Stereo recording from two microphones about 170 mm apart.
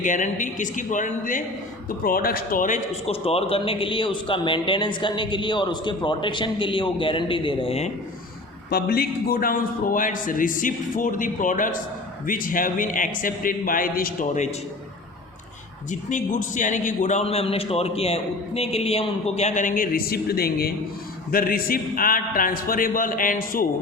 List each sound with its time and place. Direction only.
0.0 s a man's voice: 50° left (ahead or behind); by 7.9 s 35° left (ahead or behind)
8.7 s a man's voice: 65° left (ahead or behind); by 14.5 s 45° left (ahead or behind)
15.9 s a man's voice: 45° left (ahead or behind)